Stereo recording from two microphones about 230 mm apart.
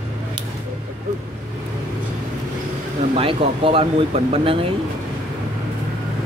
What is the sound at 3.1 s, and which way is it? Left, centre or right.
Speech, right.